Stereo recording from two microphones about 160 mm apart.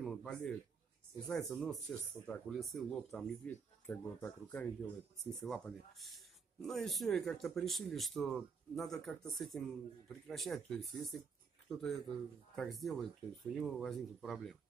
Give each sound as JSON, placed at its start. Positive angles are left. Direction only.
{"t": 0.0, "sound": "a sound", "side_deg": 5}
{"t": 1.2, "sound": "speech", "side_deg": 0}
{"t": 3.4, "sound": "speech", "side_deg": 10}